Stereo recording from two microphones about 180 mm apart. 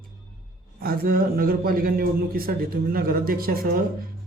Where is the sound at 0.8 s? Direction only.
55° right (ahead or behind).